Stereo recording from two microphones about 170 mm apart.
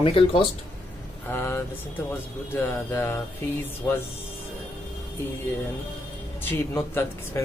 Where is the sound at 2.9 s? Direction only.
15° left (ahead or behind).